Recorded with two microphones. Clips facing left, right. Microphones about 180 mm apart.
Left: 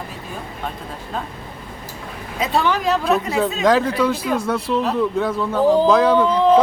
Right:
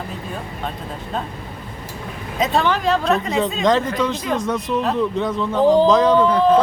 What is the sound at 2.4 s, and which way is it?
Speech, 10° left (ahead or behind).